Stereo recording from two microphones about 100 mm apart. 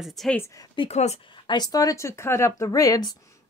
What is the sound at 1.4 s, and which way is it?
Speech, 40° left (ahead or behind).